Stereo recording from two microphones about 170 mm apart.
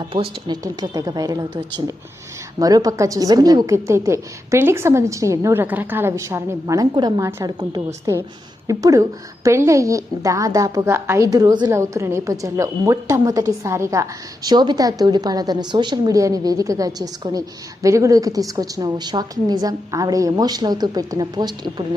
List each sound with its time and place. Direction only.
0.1 s a woman's voice: 30° right (ahead or behind)